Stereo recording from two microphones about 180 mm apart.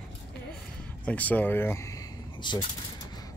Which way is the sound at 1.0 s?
10° left (ahead or behind).